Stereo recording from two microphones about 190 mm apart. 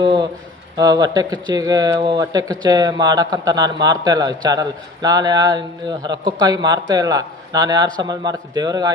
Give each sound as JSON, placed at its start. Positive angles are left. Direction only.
{"t": 0.0, "sound": "speech", "side_deg": -25}